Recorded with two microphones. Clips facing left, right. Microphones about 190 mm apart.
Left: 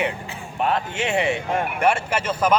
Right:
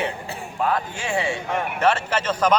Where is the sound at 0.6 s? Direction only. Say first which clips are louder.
Left 1 dB; 25° left (ahead or behind).